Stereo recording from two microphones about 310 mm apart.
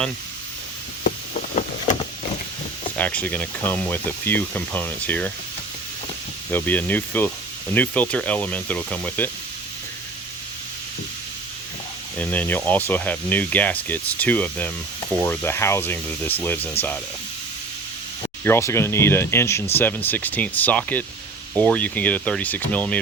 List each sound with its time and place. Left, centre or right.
1.0 s vehicle: left
3.0 s speech: centre
6.5 s speech: centre
12.2 s speech: centre
18.4 s speech: centre